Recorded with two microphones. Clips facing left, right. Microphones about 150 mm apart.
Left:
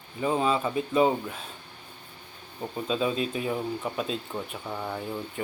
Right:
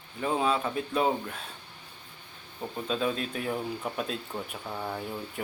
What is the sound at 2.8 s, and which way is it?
Speech, 5° left (ahead or behind).